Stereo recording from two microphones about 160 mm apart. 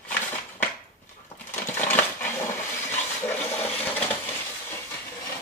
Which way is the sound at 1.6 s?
15° left (ahead or behind).